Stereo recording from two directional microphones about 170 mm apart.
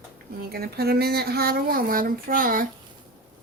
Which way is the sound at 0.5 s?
65° right (ahead or behind).